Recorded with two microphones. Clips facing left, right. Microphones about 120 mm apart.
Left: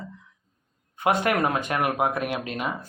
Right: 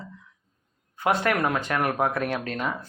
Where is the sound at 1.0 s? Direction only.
20° left (ahead or behind).